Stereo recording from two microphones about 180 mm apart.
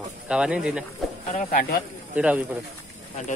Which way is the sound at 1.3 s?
50° left (ahead or behind).